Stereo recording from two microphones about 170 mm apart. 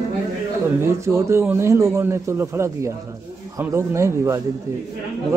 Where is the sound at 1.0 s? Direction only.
15° right (ahead or behind).